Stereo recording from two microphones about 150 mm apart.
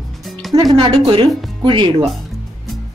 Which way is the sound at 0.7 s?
40° right (ahead or behind).